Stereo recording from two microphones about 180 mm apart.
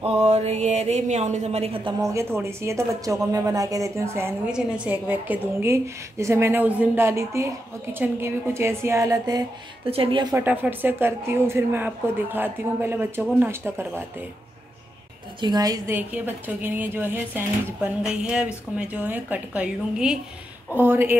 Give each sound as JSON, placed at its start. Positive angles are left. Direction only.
{"t": 0.0, "sound": "speech", "side_deg": -35}
{"t": 2.0, "sound": "speech", "side_deg": -15}
{"t": 9.8, "sound": "speech", "side_deg": -30}
{"t": 10.3, "sound": "speech", "side_deg": -10}
{"t": 15.4, "sound": "a woman's voice", "side_deg": -20}
{"t": 16.0, "sound": "speech", "side_deg": -10}